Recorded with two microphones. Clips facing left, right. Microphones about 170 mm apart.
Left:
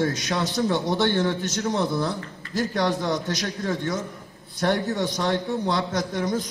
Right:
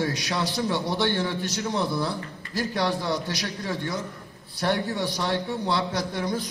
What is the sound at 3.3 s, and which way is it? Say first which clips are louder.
A man's voice: left 3 dB; 45° left (ahead or behind).